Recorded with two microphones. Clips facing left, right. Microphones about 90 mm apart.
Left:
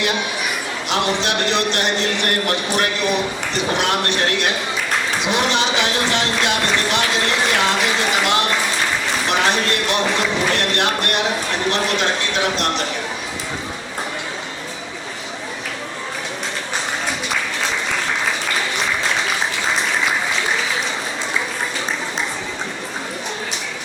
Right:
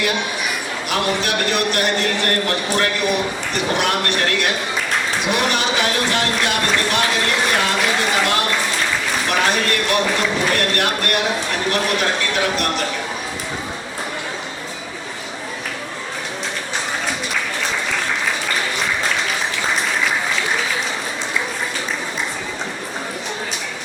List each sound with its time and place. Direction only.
0.9 s a man's voice: 20° left (ahead or behind)